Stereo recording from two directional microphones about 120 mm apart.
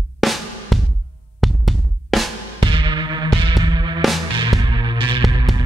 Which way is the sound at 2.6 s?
40° right (ahead or behind).